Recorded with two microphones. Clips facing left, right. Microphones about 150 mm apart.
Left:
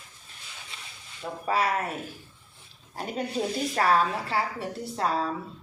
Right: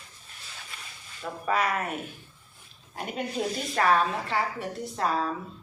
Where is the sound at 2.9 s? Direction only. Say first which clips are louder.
Left 1 dB; 40° left (ahead or behind).